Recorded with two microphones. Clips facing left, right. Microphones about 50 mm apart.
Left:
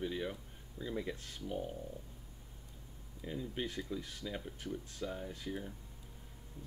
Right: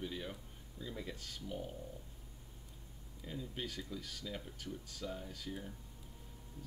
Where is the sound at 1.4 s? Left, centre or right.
Centre.